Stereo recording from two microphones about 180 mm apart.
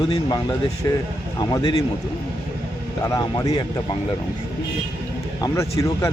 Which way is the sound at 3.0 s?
20° left (ahead or behind).